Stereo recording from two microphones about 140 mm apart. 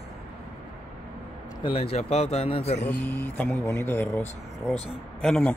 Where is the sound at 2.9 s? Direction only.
15° left (ahead or behind).